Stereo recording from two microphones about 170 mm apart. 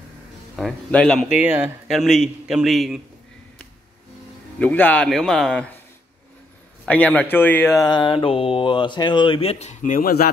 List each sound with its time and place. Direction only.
0.6 s speech: 5° left (ahead or behind)
1.4 s speech: 10° right (ahead or behind)
4.6 s speech: 10° left (ahead or behind)
6.9 s speech: 10° left (ahead or behind); by 9.9 s 40° left (ahead or behind)
9.9 s speech: 65° left (ahead or behind)